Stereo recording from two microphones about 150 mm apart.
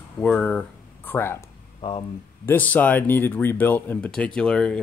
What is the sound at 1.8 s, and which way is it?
Speech, 30° left (ahead or behind).